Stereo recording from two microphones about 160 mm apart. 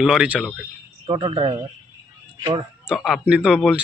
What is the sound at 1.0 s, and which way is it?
Speech, 35° right (ahead or behind).